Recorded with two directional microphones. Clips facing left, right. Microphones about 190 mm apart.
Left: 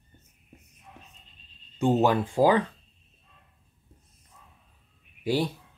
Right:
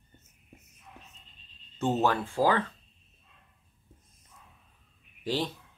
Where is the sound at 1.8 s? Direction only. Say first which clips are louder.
Left 5 dB; 15° left (ahead or behind).